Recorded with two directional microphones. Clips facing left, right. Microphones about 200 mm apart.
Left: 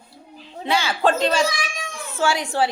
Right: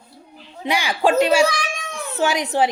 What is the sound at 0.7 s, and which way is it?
A woman's voice, 15° right (ahead or behind).